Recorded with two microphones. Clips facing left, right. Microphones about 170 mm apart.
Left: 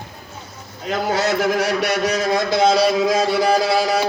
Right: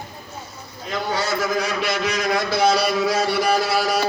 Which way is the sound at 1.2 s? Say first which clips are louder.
Left 4 dB; 80° left.